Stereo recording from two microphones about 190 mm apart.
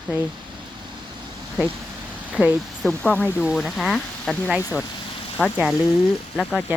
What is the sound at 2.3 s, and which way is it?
Speech, 5° right (ahead or behind).